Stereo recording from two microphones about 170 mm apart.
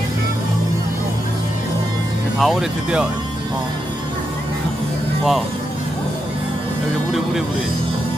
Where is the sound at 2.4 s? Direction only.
Centre (ahead or behind).